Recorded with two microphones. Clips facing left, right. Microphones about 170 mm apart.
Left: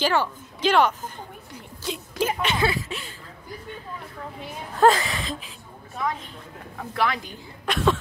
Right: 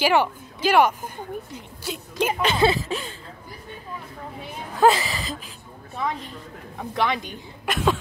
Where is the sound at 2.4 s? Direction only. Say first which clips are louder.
Right 4 dB; 30° right (ahead or behind).